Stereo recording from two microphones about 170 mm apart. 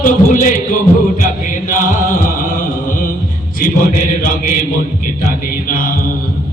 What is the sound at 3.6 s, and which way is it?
A man's voice, 55° left (ahead or behind).